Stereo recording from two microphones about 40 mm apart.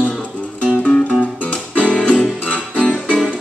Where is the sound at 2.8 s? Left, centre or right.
Centre.